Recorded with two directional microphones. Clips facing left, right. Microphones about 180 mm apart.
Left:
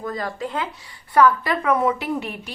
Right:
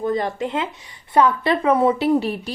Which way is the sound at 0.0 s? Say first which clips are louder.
Right 6 dB; 25° right (ahead or behind).